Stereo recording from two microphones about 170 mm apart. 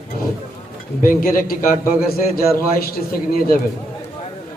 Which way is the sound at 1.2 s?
55° left (ahead or behind).